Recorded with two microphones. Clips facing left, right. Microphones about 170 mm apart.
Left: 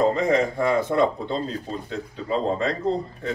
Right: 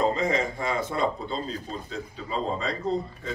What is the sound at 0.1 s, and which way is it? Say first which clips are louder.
Speech: left 5 dB; 60° left (ahead or behind).